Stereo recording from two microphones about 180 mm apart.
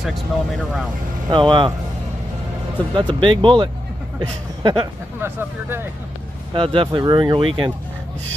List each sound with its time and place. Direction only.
0.0 s speech: centre (ahead or behind)
1.3 s speech: 25° right (ahead or behind)
2.9 s speech: 25° right (ahead or behind)
5.2 s speech: 15° right (ahead or behind)
6.5 s speech: 30° right (ahead or behind)